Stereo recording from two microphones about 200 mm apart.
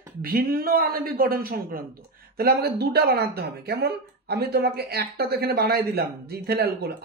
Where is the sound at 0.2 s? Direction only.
45° right (ahead or behind).